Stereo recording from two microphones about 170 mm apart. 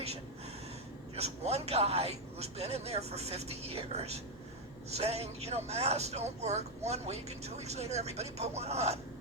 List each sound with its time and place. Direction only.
1.1 s speech: 40° right (ahead or behind)